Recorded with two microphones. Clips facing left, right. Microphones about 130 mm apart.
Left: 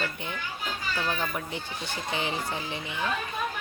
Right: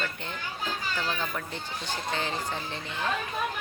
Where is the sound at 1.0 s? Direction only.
15° left (ahead or behind).